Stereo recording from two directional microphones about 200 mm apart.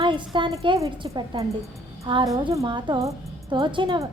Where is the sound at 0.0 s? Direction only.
25° right (ahead or behind).